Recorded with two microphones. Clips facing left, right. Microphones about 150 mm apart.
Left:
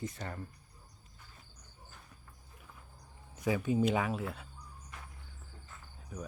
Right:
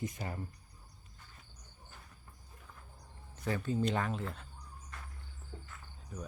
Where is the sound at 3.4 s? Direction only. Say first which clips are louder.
Left 4 dB; 10° left (ahead or behind).